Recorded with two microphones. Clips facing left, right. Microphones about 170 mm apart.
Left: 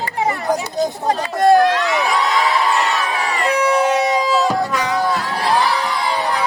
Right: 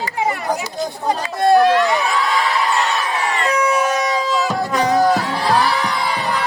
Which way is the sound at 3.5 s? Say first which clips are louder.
Left 3 dB; 30° left (ahead or behind).